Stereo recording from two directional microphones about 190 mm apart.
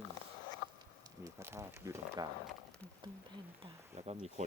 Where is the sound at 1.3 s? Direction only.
15° right (ahead or behind).